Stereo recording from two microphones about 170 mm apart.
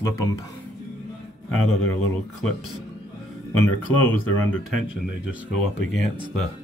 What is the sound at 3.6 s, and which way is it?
Speech, 10° left (ahead or behind).